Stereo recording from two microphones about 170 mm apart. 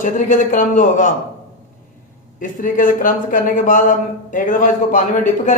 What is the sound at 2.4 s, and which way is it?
Speech, 50° left (ahead or behind).